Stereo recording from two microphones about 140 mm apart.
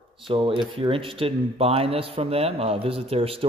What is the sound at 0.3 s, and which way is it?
A man's voice, 35° right (ahead or behind).